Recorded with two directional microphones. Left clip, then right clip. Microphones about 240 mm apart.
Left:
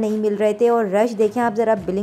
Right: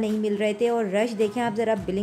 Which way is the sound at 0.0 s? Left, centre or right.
Centre.